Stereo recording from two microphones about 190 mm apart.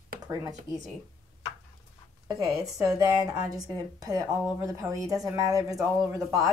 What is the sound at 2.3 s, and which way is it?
A woman's voice, 20° right (ahead or behind).